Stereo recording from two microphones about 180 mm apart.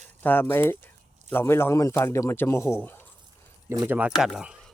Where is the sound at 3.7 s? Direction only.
20° right (ahead or behind).